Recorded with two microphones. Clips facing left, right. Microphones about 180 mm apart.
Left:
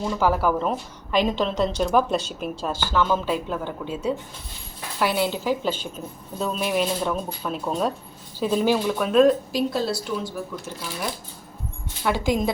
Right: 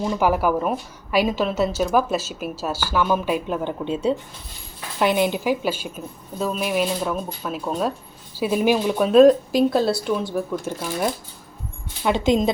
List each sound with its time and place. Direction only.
0.2 s a woman's voice: 15° right (ahead or behind)
9.1 s speech: 45° right (ahead or behind)
12.0 s a woman's voice: 20° right (ahead or behind)